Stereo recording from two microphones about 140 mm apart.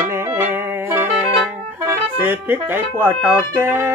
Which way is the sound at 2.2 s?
15° right (ahead or behind).